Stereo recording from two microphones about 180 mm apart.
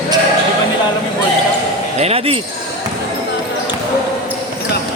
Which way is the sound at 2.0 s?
35° right (ahead or behind).